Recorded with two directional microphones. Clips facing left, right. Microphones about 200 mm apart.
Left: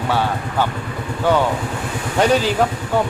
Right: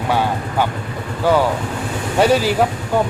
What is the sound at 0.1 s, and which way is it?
Speech, 15° right (ahead or behind).